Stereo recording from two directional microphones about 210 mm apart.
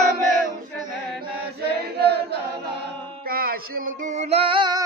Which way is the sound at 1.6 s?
50° right (ahead or behind).